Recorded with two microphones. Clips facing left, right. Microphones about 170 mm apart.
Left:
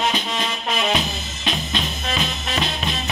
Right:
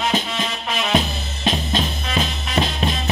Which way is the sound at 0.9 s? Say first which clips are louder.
Right 4 dB; 40° right (ahead or behind).